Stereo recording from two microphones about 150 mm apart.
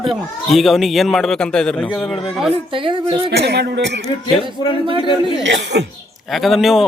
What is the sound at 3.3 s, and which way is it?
Speech, 90° right.